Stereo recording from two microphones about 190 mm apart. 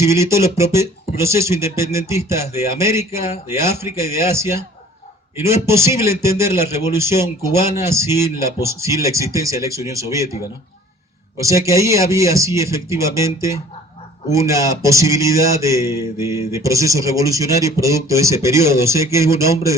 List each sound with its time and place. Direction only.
0.0 s speech: 15° right (ahead or behind)
11.3 s speech: 15° right (ahead or behind)